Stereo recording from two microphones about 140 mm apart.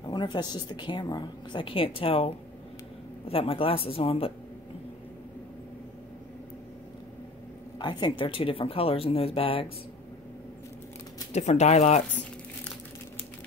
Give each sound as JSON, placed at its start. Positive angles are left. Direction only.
{"t": 0.0, "sound": "a woman's voice", "side_deg": 30}
{"t": 7.8, "sound": "a woman's voice", "side_deg": 30}
{"t": 11.3, "sound": "a woman's voice", "side_deg": 55}